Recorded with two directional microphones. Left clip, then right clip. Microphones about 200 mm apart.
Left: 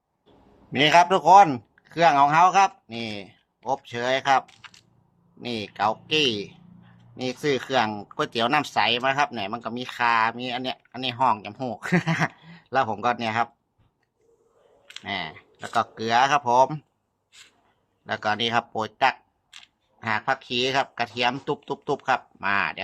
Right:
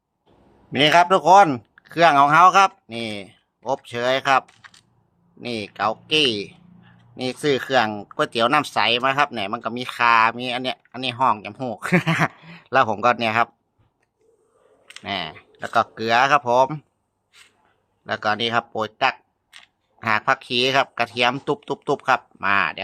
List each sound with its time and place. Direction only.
0.7 s speech: 20° right (ahead or behind)
15.0 s speech: 25° right (ahead or behind)
18.0 s speech: 20° right (ahead or behind)
20.1 s speech: 30° right (ahead or behind)